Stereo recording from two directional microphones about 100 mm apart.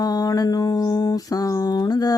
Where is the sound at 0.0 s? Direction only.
40° left (ahead or behind).